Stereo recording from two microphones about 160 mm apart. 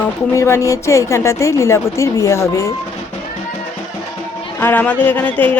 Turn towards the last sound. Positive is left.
turn(degrees=10)  # may be behind; listen again after turning